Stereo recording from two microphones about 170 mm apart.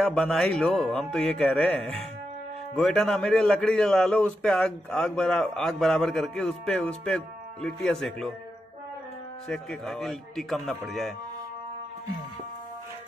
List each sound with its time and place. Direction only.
0.0 s a man's voice: 5° left (ahead or behind)
2.7 s a man's voice: 5° left (ahead or behind)
9.5 s a man's voice: centre (ahead or behind)